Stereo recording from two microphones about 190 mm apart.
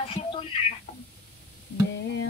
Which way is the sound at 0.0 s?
30° left (ahead or behind).